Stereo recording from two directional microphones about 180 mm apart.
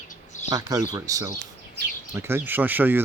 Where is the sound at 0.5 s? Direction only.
20° right (ahead or behind).